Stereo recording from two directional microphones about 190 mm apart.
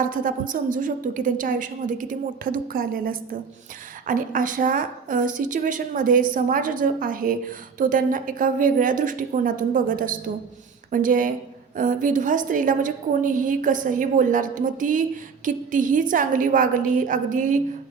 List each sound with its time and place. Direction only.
0.0 s a woman's voice: 45° right (ahead or behind)